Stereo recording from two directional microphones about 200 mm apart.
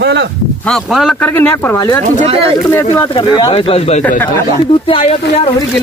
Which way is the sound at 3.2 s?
20° left (ahead or behind).